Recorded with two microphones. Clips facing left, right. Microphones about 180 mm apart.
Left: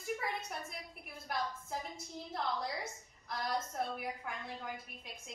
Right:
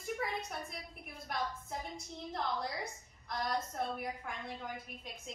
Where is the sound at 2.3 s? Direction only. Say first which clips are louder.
Even; centre (ahead or behind).